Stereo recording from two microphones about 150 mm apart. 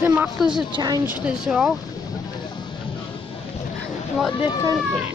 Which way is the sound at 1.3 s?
5° right (ahead or behind).